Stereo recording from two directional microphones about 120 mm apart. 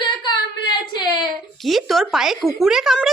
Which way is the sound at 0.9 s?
35° left (ahead or behind).